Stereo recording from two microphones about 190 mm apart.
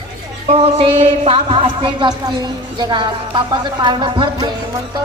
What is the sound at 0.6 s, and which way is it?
Speech, 30° right (ahead or behind).